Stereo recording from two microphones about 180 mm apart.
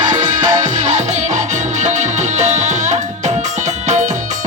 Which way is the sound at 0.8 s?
40° right (ahead or behind).